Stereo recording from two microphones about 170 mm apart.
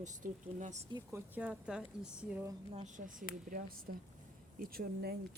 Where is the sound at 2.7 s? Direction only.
45° right (ahead or behind).